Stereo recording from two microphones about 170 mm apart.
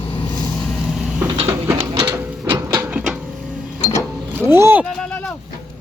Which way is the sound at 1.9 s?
25° right (ahead or behind).